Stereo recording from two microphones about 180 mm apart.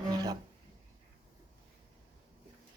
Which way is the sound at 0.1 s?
20° right (ahead or behind).